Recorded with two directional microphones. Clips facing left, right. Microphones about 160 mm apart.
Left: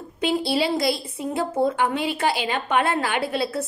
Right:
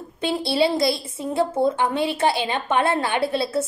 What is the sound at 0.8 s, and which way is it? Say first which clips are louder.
A woman's voice: right 1 dB; 25° right (ahead or behind).